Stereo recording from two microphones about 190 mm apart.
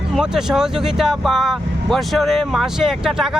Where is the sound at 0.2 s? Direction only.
5° right (ahead or behind).